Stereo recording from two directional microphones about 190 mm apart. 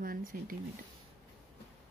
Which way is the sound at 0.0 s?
45° right (ahead or behind).